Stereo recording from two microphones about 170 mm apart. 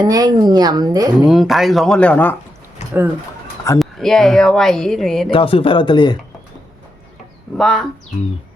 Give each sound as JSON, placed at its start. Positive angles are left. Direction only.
{"t": 0.0, "sound": "speech", "side_deg": -20}
{"t": 1.2, "sound": "speech", "side_deg": 0}
{"t": 3.8, "sound": "speech", "side_deg": 0}
{"t": 5.3, "sound": "speech", "side_deg": 30}
{"t": 7.5, "sound": "speech", "side_deg": 0}